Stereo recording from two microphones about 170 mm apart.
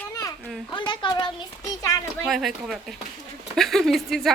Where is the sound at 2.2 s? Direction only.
Centre (ahead or behind).